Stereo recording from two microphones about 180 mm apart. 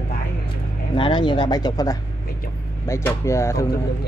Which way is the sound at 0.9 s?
25° left (ahead or behind).